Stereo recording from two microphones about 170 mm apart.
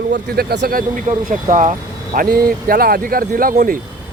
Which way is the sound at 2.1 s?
60° right (ahead or behind).